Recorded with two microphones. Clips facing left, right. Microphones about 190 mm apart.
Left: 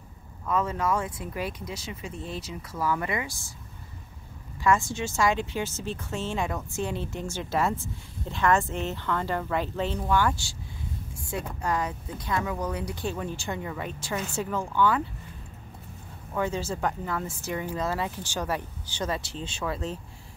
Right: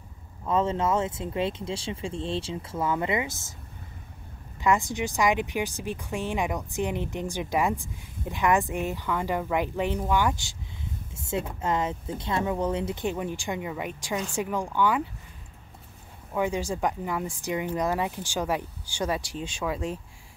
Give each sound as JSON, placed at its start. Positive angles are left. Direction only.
{"t": 0.5, "sound": "speech", "side_deg": -25}
{"t": 4.6, "sound": "speech", "side_deg": -15}
{"t": 16.3, "sound": "speech", "side_deg": -15}